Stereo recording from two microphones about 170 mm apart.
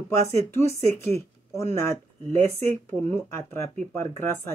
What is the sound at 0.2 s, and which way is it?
Speech, 15° left (ahead or behind).